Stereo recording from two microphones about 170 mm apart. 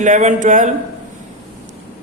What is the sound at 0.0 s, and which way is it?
Mantra, 45° right (ahead or behind).